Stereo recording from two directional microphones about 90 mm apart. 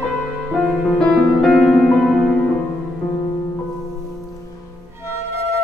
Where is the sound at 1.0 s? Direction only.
5° left (ahead or behind).